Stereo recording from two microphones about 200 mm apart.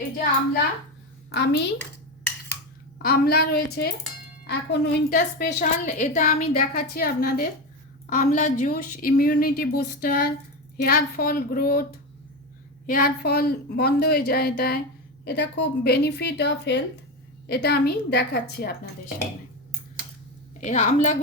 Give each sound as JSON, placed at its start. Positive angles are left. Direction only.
{"t": 1.3, "sound": "speech", "side_deg": 55}
{"t": 3.0, "sound": "a woman's voice", "side_deg": 50}
{"t": 20.6, "sound": "a woman's voice", "side_deg": 35}